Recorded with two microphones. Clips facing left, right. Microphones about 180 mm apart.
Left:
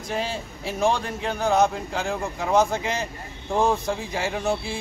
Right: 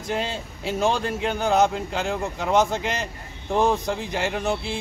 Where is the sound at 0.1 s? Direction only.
Centre (ahead or behind).